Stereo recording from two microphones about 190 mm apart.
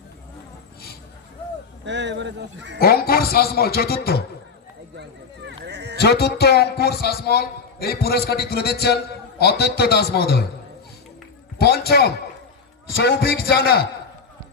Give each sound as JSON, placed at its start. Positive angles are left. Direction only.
{"t": 1.8, "sound": "speech", "side_deg": -65}
{"t": 2.7, "sound": "a man's voice", "side_deg": 55}
{"t": 5.6, "sound": "bow-wow", "side_deg": -60}
{"t": 6.0, "sound": "a man's voice", "side_deg": 60}
{"t": 11.5, "sound": "a man's voice", "side_deg": 55}